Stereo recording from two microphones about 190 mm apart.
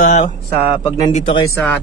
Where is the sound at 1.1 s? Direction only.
30° left (ahead or behind).